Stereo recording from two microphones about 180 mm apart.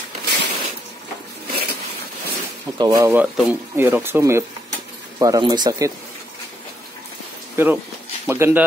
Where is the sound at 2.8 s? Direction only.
20° right (ahead or behind).